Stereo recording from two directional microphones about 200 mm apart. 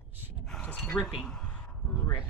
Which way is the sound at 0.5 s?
5° left (ahead or behind).